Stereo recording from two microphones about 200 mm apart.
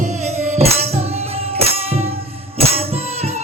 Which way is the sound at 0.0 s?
35° right (ahead or behind).